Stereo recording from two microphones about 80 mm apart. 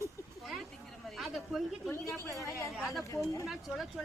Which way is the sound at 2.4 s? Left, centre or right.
Left.